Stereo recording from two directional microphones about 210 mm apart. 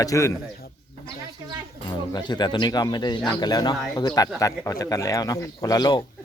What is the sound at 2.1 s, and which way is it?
Speech, 20° left (ahead or behind).